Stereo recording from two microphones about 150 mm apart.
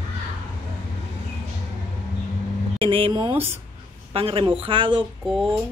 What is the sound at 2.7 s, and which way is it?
Speech, 35° right (ahead or behind).